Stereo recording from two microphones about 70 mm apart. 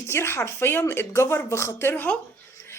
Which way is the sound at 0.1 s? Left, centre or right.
Left.